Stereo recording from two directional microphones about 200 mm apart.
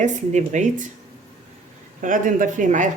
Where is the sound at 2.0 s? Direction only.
40° right (ahead or behind).